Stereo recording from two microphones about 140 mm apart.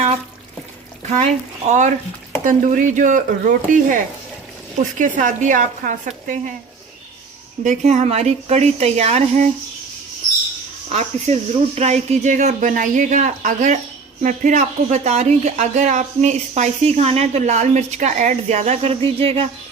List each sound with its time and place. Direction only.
2.4 s speech: 70° right (ahead or behind)
7.6 s a woman's voice: 60° right (ahead or behind)
10.9 s speech: 50° right (ahead or behind)